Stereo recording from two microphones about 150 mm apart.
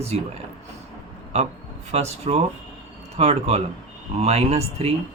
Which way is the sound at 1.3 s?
50° right (ahead or behind).